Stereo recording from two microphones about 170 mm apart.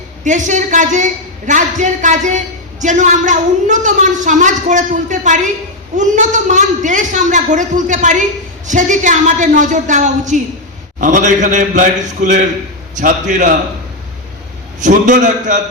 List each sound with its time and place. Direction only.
0.3 s a woman's voice: 45° right (ahead or behind)
14.8 s a woman's voice: 50° right (ahead or behind)